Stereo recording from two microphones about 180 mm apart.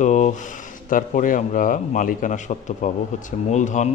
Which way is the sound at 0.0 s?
45° left (ahead or behind).